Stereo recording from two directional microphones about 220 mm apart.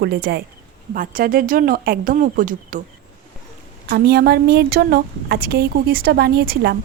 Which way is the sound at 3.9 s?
45° right (ahead or behind).